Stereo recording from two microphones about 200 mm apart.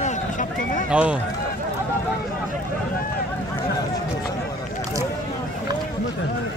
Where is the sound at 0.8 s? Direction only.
5° right (ahead or behind).